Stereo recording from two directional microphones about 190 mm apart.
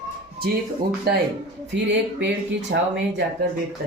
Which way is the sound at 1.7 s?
65° right (ahead or behind).